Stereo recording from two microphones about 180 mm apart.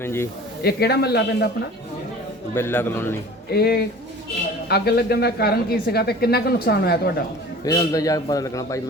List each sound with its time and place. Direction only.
0.0 s speech: 15° left (ahead or behind)
0.6 s speech: 65° left (ahead or behind)
2.6 s speech: 10° left (ahead or behind)
3.5 s speech: 60° left (ahead or behind)
7.6 s a man's voice: 20° left (ahead or behind)